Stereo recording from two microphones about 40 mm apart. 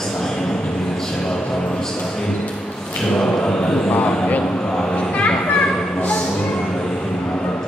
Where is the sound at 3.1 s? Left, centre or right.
Centre.